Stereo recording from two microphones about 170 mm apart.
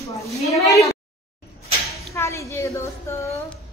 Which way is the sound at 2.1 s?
15° left (ahead or behind).